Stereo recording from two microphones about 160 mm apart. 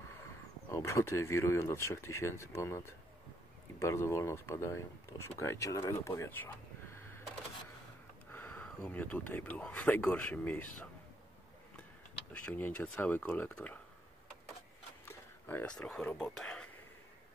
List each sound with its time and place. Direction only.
0.7 s speech: 15° left (ahead or behind)
8.3 s speech: 10° left (ahead or behind)
12.3 s speech: 10° left (ahead or behind)
15.0 s speech: 15° left (ahead or behind)